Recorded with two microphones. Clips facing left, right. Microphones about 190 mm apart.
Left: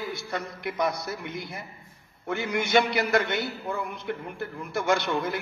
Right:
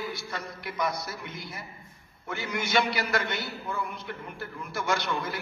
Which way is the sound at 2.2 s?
60° left (ahead or behind).